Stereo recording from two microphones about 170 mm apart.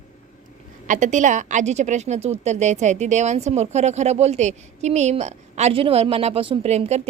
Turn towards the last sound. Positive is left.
turn(degrees=-40)  # may be behind; listen again after turning